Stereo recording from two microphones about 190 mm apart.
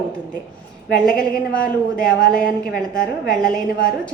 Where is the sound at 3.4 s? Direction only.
5° left (ahead or behind).